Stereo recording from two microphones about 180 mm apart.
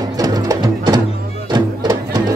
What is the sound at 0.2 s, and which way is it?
Music, 20° right (ahead or behind).